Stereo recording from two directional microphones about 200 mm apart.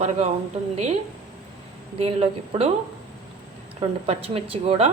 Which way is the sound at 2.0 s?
30° right (ahead or behind).